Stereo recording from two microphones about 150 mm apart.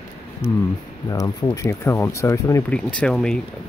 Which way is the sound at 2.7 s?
10° left (ahead or behind).